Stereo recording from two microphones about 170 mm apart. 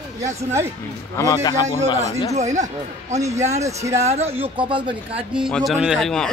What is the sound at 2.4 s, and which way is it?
A man's voice, 45° right (ahead or behind).